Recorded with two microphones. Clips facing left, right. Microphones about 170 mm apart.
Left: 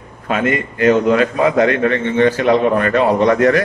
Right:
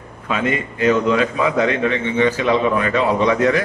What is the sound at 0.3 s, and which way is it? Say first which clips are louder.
A man's voice: left 3 dB; 55° left (ahead or behind).